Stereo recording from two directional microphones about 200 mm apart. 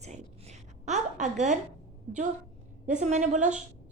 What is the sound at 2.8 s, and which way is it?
Speech, 35° right (ahead or behind).